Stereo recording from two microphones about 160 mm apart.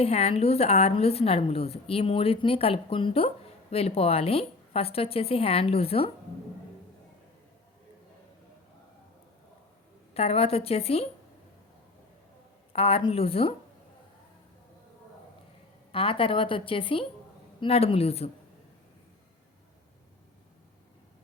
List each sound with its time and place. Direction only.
0.0 s a woman's voice: 40° left (ahead or behind)
10.2 s a woman's voice: 40° left (ahead or behind)
12.7 s a woman's voice: 35° left (ahead or behind)
15.9 s a woman's voice: 35° left (ahead or behind)